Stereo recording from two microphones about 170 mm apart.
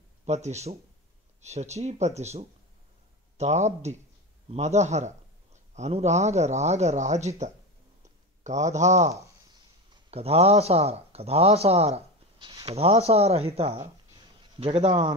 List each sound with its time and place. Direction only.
0.2 s a man's voice: 40° right (ahead or behind)
8.0 s a sound: 45° right (ahead or behind)
10.1 s a man's voice: 35° right (ahead or behind)